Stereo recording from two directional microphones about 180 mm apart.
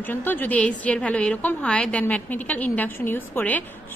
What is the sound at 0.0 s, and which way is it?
A woman's voice, 10° left (ahead or behind).